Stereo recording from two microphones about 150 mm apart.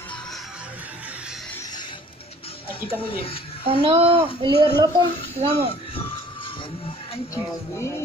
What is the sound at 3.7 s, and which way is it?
Speech, 35° right (ahead or behind).